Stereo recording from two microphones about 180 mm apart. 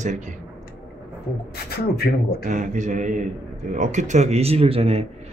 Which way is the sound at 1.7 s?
60° left (ahead or behind).